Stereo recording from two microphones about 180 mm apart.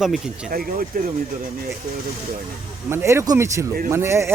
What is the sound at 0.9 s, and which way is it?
Speech, 50° right (ahead or behind).